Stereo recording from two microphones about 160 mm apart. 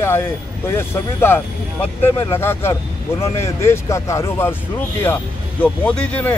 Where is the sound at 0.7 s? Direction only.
15° left (ahead or behind).